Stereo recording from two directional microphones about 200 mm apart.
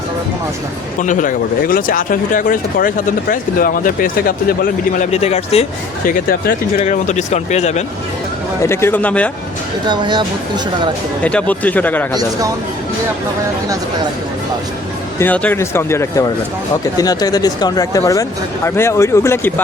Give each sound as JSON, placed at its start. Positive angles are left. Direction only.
{"t": 1.0, "sound": "speech", "side_deg": 40}
{"t": 5.1, "sound": "speech", "side_deg": 30}
{"t": 6.1, "sound": "speech", "side_deg": 45}
{"t": 6.8, "sound": "speech", "side_deg": 35}
{"t": 8.6, "sound": "speech", "side_deg": 15}
{"t": 9.8, "sound": "speech", "side_deg": -25}
{"t": 11.2, "sound": "speech", "side_deg": 5}
{"t": 15.2, "sound": "speech", "side_deg": 10}